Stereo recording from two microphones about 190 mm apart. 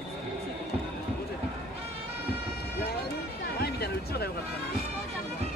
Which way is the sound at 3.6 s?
55° left (ahead or behind).